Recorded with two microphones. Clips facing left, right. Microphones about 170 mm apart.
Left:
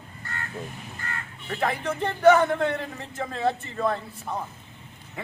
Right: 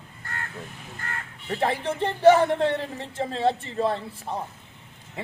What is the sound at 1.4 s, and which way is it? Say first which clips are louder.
Speech: right 2 dB; 30° right (ahead or behind).